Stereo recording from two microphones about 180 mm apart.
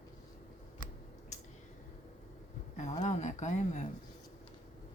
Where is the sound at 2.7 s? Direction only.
40° left (ahead or behind).